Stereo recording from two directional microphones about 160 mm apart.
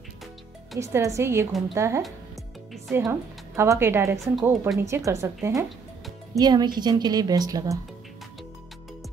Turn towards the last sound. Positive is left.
turn(degrees=-25)  # may be behind; listen again after turning